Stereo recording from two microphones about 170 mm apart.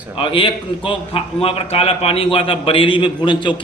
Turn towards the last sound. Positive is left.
turn(degrees=25)  # may be behind; listen again after turning